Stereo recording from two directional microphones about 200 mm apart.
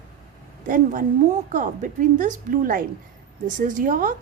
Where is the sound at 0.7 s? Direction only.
40° right (ahead or behind).